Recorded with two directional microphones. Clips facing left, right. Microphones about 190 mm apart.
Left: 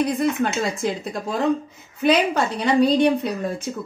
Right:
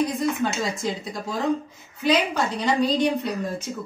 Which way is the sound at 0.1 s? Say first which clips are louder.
Left 3 dB; 60° left (ahead or behind).